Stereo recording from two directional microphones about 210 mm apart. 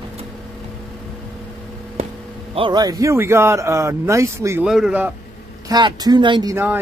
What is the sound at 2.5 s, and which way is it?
Speech, 20° right (ahead or behind).